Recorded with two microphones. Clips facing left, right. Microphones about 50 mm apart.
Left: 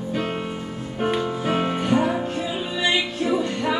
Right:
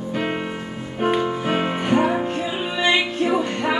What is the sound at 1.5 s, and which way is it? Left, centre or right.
Music, right.